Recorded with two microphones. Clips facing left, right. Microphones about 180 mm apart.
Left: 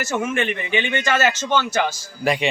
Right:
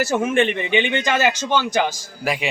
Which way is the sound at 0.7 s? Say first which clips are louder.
Right 2 dB; 20° right (ahead or behind).